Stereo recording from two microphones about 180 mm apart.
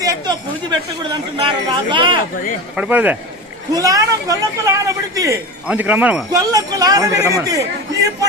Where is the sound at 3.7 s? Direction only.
20° right (ahead or behind).